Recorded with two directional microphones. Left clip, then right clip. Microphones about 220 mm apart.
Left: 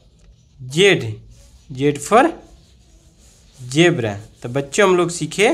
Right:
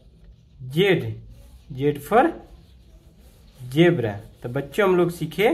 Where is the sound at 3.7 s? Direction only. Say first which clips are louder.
Left 3 dB; 25° left (ahead or behind).